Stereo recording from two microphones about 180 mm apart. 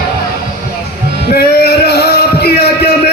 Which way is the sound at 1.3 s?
60° left (ahead or behind).